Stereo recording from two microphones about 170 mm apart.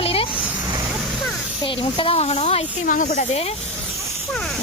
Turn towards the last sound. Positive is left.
turn(degrees=50)  # may be behind; listen again after turning